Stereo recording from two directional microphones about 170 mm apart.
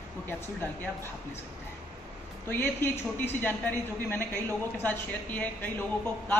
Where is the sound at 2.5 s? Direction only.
15° left (ahead or behind).